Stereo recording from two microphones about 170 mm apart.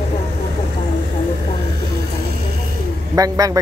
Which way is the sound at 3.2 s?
20° right (ahead or behind).